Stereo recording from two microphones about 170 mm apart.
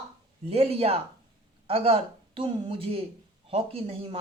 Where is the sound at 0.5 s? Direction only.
35° right (ahead or behind).